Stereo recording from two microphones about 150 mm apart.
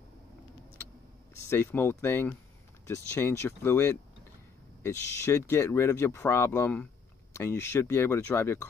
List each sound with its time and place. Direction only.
1.5 s speech: 15° left (ahead or behind)